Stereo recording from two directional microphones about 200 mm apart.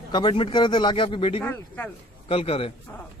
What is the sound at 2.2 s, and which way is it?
Speech, 30° left (ahead or behind).